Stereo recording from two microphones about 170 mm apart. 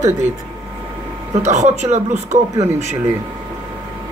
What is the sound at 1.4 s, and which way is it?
Speech, 45° right (ahead or behind).